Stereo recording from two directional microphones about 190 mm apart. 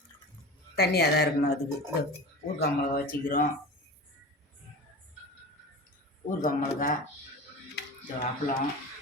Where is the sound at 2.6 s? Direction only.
50° left (ahead or behind).